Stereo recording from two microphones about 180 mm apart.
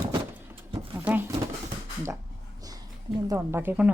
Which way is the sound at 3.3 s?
10° right (ahead or behind).